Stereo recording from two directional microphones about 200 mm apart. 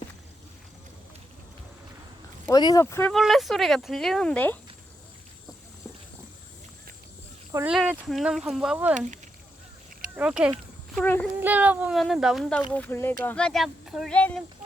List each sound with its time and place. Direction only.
2.5 s speech: 20° left (ahead or behind)
3.1 s speech: centre (ahead or behind)
7.5 s speech: 10° right (ahead or behind)
10.2 s speech: 5° right (ahead or behind)
10.9 s speech: 10° left (ahead or behind)
11.3 s speech: 10° right (ahead or behind)